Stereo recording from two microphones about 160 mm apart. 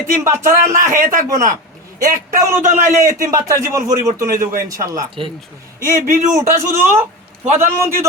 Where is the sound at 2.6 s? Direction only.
50° right (ahead or behind).